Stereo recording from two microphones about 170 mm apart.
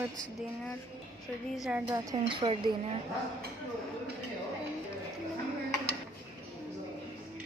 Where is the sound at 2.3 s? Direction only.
30° right (ahead or behind).